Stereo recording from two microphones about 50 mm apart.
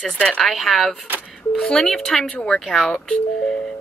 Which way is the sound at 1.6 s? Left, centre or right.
Centre.